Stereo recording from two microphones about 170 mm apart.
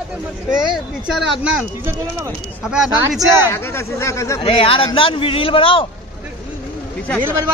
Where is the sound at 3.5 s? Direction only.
15° left (ahead or behind).